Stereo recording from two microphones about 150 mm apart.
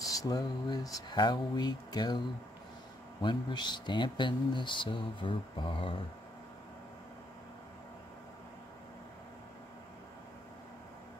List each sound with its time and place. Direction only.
0.1 s speech: 25° left (ahead or behind)